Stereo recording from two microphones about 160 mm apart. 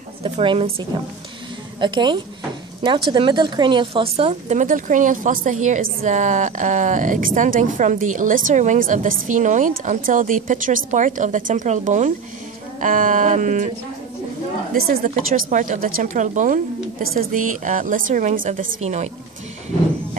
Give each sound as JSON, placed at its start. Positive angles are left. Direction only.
{"t": 0.2, "sound": "a woman's voice", "side_deg": -35}
{"t": 1.8, "sound": "a woman's voice", "side_deg": -30}
{"t": 14.7, "sound": "a woman's voice", "side_deg": -70}
{"t": 15.0, "sound": "speech", "side_deg": -55}